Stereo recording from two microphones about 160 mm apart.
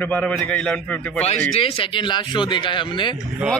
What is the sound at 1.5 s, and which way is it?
Speech, 35° left (ahead or behind).